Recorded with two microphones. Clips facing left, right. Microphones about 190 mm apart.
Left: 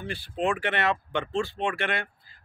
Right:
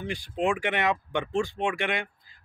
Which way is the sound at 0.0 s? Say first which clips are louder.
Right 1 dB; 15° right (ahead or behind).